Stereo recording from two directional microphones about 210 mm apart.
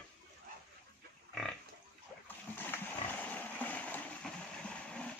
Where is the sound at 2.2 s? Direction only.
10° left (ahead or behind).